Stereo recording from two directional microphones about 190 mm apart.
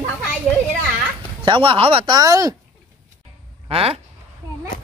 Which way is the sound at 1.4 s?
25° right (ahead or behind).